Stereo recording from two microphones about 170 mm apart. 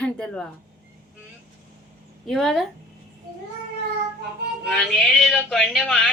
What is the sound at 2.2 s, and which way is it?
Speech, centre (ahead or behind).